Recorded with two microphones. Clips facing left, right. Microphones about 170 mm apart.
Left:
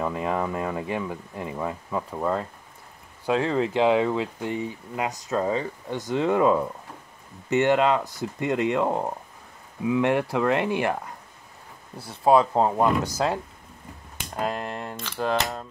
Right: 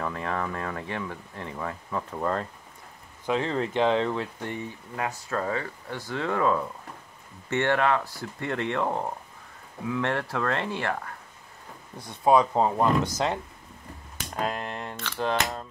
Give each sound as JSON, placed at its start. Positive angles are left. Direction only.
{"t": 0.0, "sound": "speech", "side_deg": 15}
{"t": 3.4, "sound": "speech", "side_deg": 5}
{"t": 12.0, "sound": "speech", "side_deg": 5}
{"t": 14.3, "sound": "a sound", "side_deg": 5}